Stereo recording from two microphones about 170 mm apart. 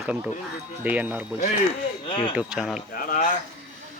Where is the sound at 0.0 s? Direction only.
10° right (ahead or behind).